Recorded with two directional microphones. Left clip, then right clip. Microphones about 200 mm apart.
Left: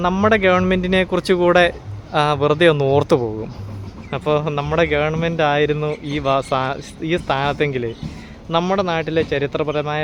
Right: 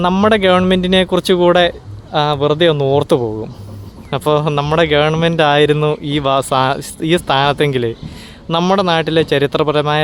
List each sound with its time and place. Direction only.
0.0 s speech: 25° right (ahead or behind)
4.1 s speech: 30° right (ahead or behind)